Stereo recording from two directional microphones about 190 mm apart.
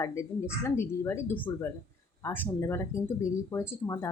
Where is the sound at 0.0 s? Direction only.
15° left (ahead or behind).